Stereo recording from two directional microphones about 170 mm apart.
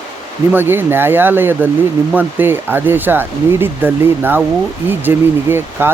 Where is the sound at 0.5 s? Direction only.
10° right (ahead or behind).